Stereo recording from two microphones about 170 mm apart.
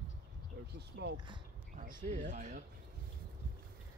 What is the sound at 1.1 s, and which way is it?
Speech, 30° right (ahead or behind).